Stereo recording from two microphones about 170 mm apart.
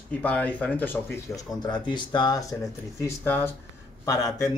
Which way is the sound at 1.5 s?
25° left (ahead or behind).